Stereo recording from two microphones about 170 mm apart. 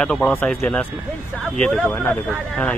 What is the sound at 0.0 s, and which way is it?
Speech, 5° left (ahead or behind).